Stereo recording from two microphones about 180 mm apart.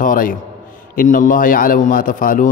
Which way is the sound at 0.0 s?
50° left (ahead or behind).